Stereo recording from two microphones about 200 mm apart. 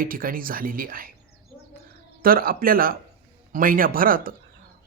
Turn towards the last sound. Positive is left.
turn(degrees=-45)  # may be behind; listen again after turning